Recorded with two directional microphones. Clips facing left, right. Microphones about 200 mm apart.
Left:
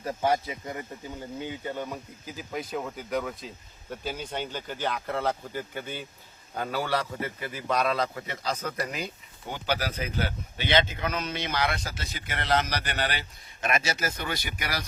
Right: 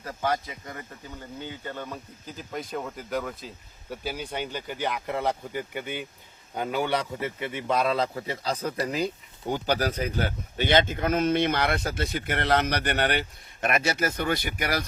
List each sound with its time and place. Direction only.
0.0 s a man's voice: 25° left (ahead or behind); by 9.0 s 30° right (ahead or behind)
9.5 s speech: 40° right (ahead or behind)